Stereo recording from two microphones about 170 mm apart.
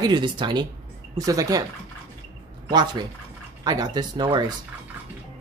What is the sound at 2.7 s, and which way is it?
Speech, 25° right (ahead or behind).